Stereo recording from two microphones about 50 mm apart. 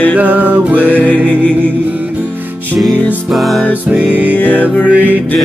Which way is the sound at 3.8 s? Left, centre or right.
Right.